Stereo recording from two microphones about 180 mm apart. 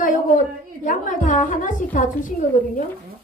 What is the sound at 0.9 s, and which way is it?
A woman's voice, 45° left (ahead or behind).